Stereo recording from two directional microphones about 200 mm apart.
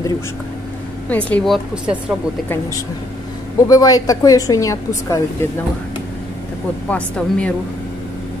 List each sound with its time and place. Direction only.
1.0 s speech: 5° left (ahead or behind)
3.5 s a woman's voice: 15° left (ahead or behind)
6.9 s speech: 5° left (ahead or behind)